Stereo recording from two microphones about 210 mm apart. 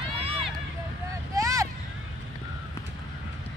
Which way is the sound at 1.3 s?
15° right (ahead or behind).